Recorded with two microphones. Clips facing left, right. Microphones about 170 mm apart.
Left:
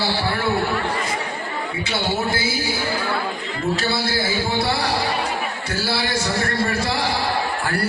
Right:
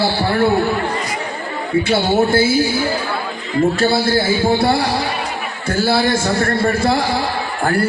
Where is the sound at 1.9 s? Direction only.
50° right (ahead or behind).